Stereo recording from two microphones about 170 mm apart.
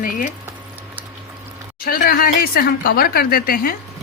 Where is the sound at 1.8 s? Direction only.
60° left (ahead or behind).